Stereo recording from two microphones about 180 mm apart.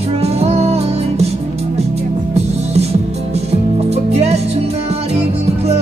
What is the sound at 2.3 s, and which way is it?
Music, 35° right (ahead or behind).